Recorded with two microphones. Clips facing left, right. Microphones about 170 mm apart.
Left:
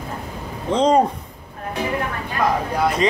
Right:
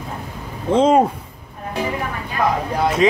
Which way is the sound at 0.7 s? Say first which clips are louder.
Right 2 dB; 5° right (ahead or behind).